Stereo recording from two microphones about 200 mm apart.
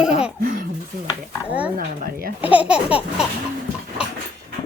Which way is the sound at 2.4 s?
5° right (ahead or behind).